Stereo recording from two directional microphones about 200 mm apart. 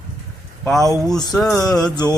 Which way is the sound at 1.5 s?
15° left (ahead or behind).